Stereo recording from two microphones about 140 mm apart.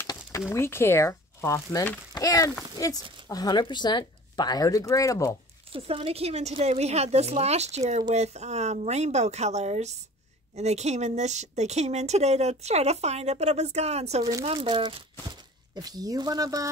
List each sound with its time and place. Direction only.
0.0 s a sound: 30° left (ahead or behind)
0.5 s speech: 20° left (ahead or behind)
5.7 s speech: 40° right (ahead or behind); by 16.7 s 25° right (ahead or behind)